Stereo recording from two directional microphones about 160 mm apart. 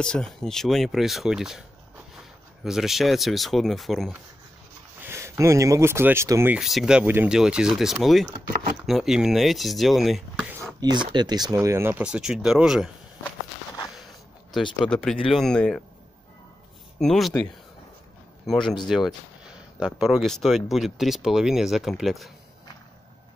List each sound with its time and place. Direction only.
0.0 s speech: 5° left (ahead or behind)
2.6 s speech: centre (ahead or behind)
5.0 s speech: 15° right (ahead or behind)
6.5 s speech: centre (ahead or behind)
10.8 s speech: 25° right (ahead or behind); by 12.9 s 5° right (ahead or behind)
14.8 s speech: 5° left (ahead or behind)
17.0 s speech: 5° left (ahead or behind)
18.4 s speech: centre (ahead or behind)